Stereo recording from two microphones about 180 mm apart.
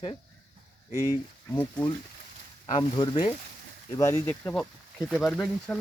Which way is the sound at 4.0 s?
15° left (ahead or behind).